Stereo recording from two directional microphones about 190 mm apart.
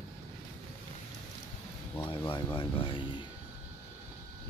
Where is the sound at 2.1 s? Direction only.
25° left (ahead or behind).